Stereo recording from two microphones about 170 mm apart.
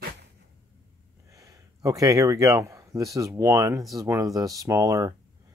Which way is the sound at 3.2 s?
20° right (ahead or behind).